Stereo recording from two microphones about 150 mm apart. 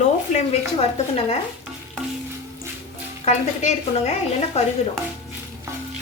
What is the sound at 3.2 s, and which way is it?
Speech, 45° left (ahead or behind).